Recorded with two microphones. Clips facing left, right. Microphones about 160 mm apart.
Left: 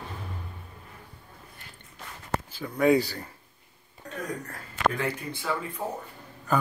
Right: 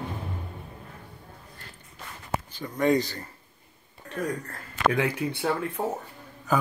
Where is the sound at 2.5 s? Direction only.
5° left (ahead or behind).